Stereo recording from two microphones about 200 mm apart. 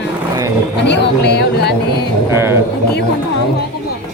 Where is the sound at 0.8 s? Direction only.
60° left (ahead or behind).